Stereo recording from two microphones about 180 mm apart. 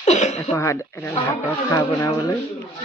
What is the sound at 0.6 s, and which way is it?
Speech, 15° left (ahead or behind).